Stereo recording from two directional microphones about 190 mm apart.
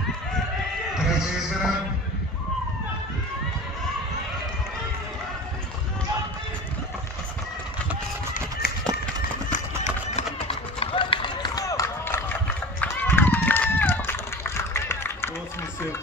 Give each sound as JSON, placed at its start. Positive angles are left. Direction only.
{"t": 0.9, "sound": "music", "side_deg": -5}
{"t": 8.9, "sound": "run", "side_deg": 50}
{"t": 9.8, "sound": "run", "side_deg": 35}